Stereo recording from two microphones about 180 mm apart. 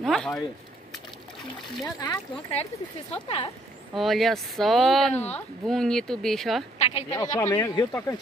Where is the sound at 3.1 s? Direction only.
35° left (ahead or behind).